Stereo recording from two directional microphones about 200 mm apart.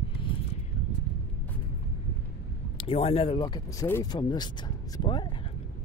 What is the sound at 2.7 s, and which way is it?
Speech, 30° left (ahead or behind).